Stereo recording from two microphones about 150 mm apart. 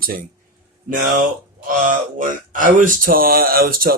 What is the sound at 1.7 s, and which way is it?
Speech, 60° right (ahead or behind).